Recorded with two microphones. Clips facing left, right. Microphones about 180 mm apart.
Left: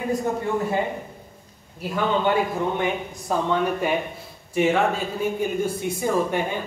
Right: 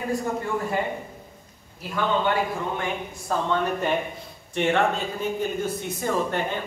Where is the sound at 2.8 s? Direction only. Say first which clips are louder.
Left 4 dB; 15° left (ahead or behind).